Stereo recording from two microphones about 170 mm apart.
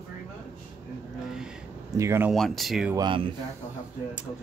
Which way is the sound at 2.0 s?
15° right (ahead or behind).